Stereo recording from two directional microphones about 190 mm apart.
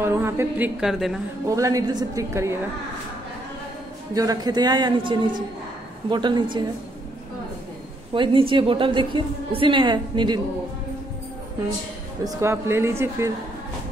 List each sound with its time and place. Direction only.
0.0 s a woman's voice: 15° right (ahead or behind)
1.5 s a woman's voice: 15° right (ahead or behind)
4.1 s a woman's voice: 20° right (ahead or behind)
8.1 s a woman's voice: 25° right (ahead or behind)
12.3 s a woman's voice: 15° right (ahead or behind)